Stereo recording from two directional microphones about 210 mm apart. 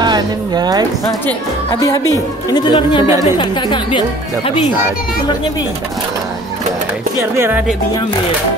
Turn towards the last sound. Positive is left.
turn(degrees=-10)  # may be behind; listen again after turning